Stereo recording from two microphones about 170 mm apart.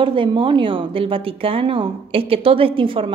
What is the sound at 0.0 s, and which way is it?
A woman's voice, 30° right (ahead or behind).